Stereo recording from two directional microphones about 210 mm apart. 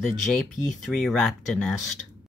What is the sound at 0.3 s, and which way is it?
Speech, 5° left (ahead or behind).